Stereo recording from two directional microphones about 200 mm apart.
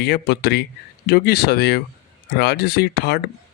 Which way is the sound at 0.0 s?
55° left (ahead or behind).